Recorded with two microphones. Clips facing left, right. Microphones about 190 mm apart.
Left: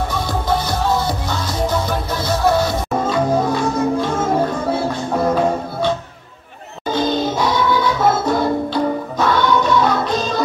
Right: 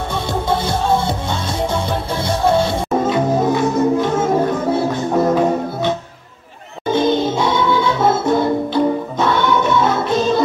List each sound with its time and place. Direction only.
0.1 s music: 25° right (ahead or behind)